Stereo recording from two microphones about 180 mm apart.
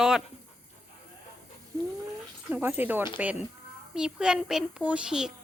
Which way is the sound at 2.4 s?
10° right (ahead or behind).